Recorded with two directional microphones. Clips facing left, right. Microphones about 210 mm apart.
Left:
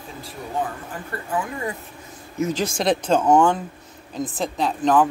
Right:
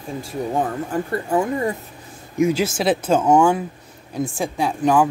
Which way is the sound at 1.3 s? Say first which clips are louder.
Right 5 dB; 40° right (ahead or behind).